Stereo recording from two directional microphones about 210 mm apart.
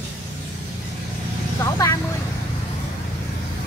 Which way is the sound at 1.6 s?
15° left (ahead or behind).